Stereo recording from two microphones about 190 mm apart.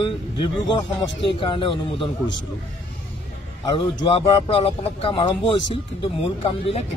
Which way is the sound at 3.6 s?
30° left (ahead or behind).